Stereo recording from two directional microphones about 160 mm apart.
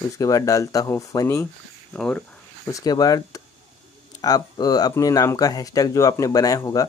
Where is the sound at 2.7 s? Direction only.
25° left (ahead or behind).